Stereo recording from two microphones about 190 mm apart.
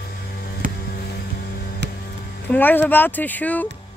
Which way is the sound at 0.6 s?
45° right (ahead or behind).